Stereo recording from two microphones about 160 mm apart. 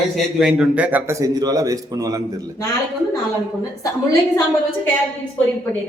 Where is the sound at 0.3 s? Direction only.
Centre (ahead or behind); by 2.2 s 20° right (ahead or behind).